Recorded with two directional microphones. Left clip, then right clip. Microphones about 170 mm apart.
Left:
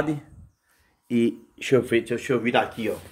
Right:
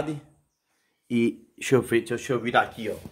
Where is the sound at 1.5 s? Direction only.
50° right (ahead or behind).